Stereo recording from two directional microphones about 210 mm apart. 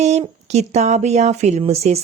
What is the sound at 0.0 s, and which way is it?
Speech, 30° right (ahead or behind).